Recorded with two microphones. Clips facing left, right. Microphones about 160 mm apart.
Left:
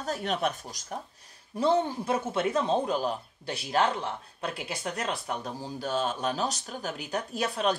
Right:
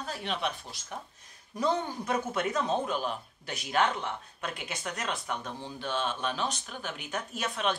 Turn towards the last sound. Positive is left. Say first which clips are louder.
# left 4 dB
turn(degrees=40)  # may be behind; listen again after turning